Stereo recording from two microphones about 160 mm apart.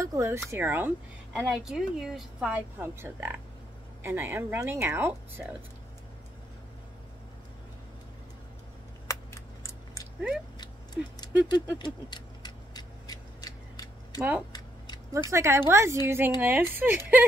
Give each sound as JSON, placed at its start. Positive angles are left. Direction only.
{"t": 0.0, "sound": "speech", "side_deg": -20}
{"t": 1.3, "sound": "speech", "side_deg": 0}
{"t": 9.0, "sound": "a sound", "side_deg": 20}
{"t": 11.4, "sound": "tick-tock", "side_deg": 30}
{"t": 15.2, "sound": "speech", "side_deg": -15}